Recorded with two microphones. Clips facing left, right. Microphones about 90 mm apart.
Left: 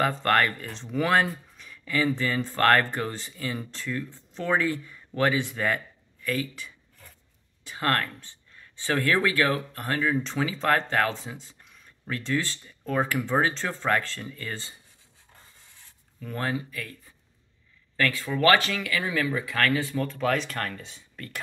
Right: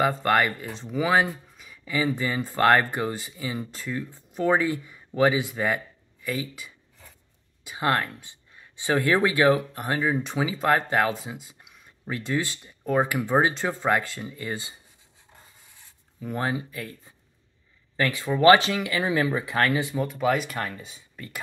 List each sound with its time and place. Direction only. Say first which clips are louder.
0.0 s speech: right 1 dB; 10° right (ahead or behind)
6.2 s a sound: left 1 dB; 10° right (ahead or behind)
7.6 s speech: right 2 dB; 10° right (ahead or behind)
16.2 s speech: right 2 dB; 15° right (ahead or behind)